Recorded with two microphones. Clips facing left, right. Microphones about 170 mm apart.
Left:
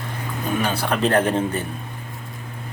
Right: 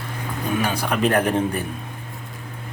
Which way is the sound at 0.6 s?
10° right (ahead or behind).